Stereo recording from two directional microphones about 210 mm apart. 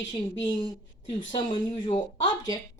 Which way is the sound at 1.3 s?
25° left (ahead or behind).